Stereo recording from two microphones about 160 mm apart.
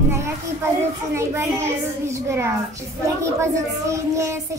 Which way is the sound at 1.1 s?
15° right (ahead or behind).